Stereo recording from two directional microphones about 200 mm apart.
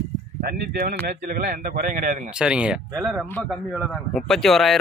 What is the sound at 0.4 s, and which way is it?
A man's voice, 50° right (ahead or behind).